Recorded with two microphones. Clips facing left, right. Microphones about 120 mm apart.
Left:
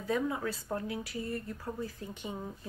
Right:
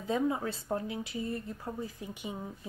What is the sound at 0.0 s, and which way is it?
Speech, 25° right (ahead or behind).